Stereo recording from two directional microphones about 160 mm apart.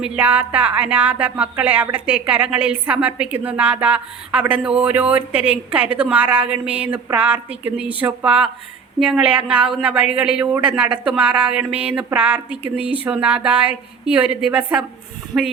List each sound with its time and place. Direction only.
0.0 s speech: 10° right (ahead or behind)
15.3 s a woman's voice: 25° right (ahead or behind)